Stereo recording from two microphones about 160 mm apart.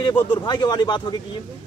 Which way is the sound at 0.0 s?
30° left (ahead or behind).